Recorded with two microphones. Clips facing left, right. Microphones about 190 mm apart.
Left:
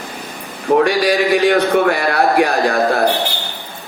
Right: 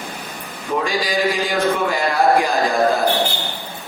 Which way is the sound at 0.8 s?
70° left (ahead or behind).